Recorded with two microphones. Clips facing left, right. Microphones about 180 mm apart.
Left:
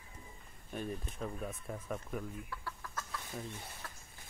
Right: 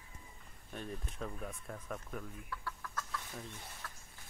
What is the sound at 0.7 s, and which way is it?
Speech, 10° left (ahead or behind).